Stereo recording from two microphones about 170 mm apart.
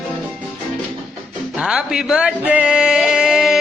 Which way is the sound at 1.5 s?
5° right (ahead or behind).